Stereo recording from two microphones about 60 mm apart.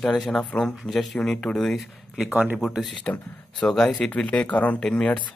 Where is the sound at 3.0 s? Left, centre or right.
Left.